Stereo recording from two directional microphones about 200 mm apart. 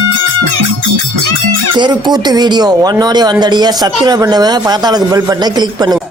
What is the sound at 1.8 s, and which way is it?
Speech, 20° right (ahead or behind).